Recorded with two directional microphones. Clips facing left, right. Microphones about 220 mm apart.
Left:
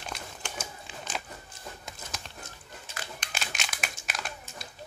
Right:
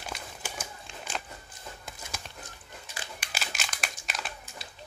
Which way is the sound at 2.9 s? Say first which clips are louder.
Left 2 dB; 15° right (ahead or behind).